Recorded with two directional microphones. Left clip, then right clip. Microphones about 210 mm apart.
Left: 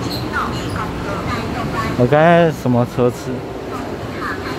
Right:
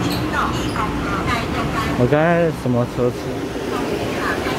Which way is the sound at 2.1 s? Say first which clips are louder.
Left 6 dB; 10° left (ahead or behind).